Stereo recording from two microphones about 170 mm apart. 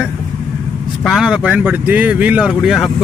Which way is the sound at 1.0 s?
5° right (ahead or behind).